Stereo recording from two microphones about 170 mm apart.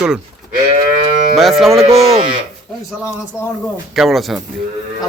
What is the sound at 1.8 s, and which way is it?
Speech, 35° right (ahead or behind).